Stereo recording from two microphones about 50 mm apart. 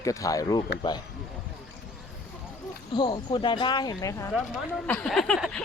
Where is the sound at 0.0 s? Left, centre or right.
Left.